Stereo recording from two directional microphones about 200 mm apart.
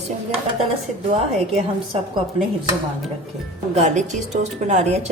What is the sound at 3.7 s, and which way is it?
Speech, 35° right (ahead or behind).